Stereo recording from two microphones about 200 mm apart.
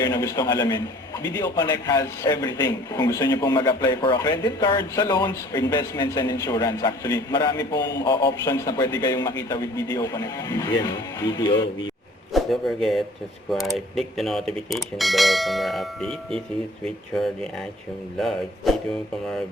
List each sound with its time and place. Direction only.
0.0 s a man's voice: 20° left (ahead or behind)
12.3 s speech: centre (ahead or behind)
18.2 s speech: centre (ahead or behind)